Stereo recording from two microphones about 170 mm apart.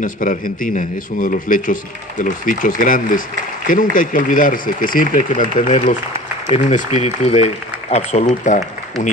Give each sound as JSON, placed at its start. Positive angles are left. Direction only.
{"t": 0.0, "sound": "a man's voice", "side_deg": 50}